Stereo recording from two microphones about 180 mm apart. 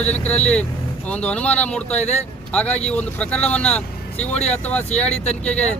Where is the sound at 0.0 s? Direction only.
5° left (ahead or behind).